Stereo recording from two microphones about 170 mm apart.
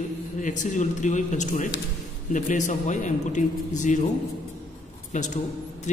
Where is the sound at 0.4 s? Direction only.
50° left (ahead or behind).